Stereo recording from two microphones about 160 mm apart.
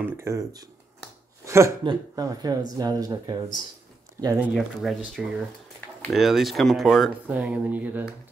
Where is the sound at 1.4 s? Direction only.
20° right (ahead or behind).